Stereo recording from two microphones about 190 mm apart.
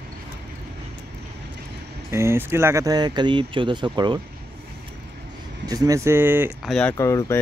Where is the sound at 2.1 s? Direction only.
15° right (ahead or behind).